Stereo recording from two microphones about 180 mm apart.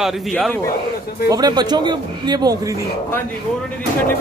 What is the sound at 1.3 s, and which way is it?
Speech, 20° right (ahead or behind).